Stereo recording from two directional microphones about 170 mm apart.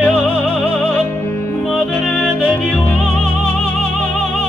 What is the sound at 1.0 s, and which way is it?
Music, 15° left (ahead or behind).